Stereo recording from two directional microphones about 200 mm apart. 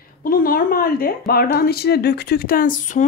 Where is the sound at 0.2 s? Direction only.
45° left (ahead or behind).